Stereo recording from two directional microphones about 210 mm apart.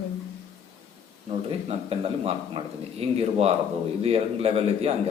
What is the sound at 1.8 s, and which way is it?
Speech, 25° right (ahead or behind).